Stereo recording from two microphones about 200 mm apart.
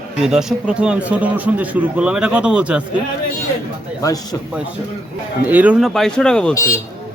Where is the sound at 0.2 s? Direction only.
Centre (ahead or behind).